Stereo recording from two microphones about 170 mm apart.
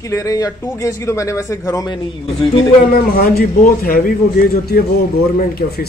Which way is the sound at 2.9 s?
60° left (ahead or behind).